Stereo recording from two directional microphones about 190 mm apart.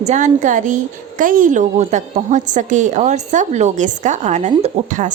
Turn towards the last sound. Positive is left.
turn(degrees=-40)  # may be behind; listen again after turning